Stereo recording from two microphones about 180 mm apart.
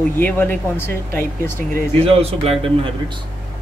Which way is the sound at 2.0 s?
35° right (ahead or behind).